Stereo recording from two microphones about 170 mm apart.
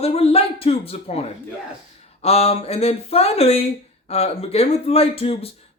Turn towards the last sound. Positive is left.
turn(degrees=35)  # may be behind; listen again after turning